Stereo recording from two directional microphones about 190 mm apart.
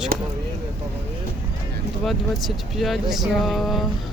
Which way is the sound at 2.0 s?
Centre (ahead or behind).